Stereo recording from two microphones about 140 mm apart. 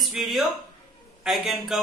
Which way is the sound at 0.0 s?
Centre (ahead or behind).